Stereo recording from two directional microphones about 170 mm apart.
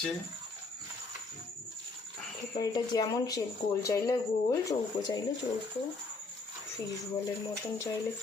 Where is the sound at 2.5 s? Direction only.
25° left (ahead or behind).